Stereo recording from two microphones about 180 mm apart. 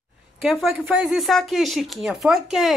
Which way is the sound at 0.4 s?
Centre (ahead or behind).